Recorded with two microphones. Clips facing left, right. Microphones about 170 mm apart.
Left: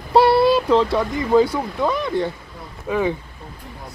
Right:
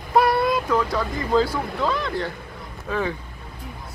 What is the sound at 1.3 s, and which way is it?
Speech, 20° left (ahead or behind).